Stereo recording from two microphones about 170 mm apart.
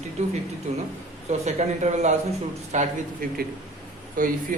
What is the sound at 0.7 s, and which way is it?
A man's voice, 40° right (ahead or behind).